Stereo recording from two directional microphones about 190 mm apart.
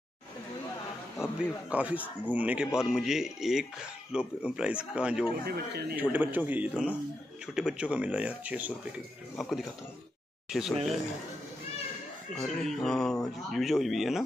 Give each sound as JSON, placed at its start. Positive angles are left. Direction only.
{"t": 1.2, "sound": "speech", "side_deg": -5}
{"t": 5.4, "sound": "speech", "side_deg": -55}
{"t": 5.9, "sound": "speech", "side_deg": -10}
{"t": 12.4, "sound": "speech", "side_deg": 0}